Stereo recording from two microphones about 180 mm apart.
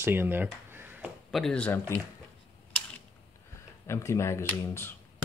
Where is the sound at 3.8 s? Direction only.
15° left (ahead or behind).